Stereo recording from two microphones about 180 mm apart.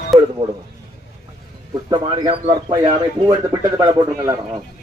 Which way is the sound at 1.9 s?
25° right (ahead or behind).